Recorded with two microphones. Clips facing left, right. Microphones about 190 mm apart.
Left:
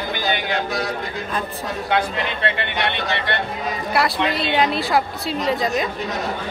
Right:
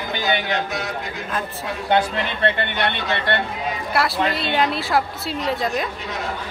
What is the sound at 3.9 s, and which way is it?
A woman's voice, centre (ahead or behind).